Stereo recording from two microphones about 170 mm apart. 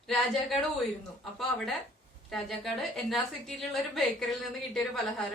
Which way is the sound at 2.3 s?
Centre (ahead or behind).